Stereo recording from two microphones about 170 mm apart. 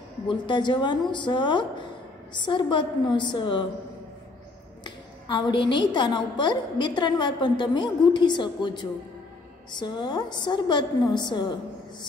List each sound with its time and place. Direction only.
0.3 s a woman's voice: 30° left (ahead or behind)
4.8 s a woman's voice: 30° left (ahead or behind)